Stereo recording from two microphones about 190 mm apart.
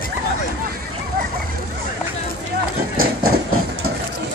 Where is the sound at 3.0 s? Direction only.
90° right.